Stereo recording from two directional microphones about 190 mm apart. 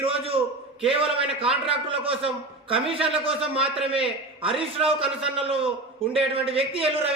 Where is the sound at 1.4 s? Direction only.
30° right (ahead or behind).